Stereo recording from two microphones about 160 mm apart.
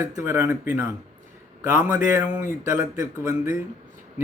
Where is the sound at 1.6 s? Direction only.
15° right (ahead or behind).